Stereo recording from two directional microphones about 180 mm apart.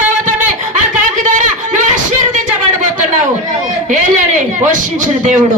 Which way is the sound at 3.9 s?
45° right (ahead or behind).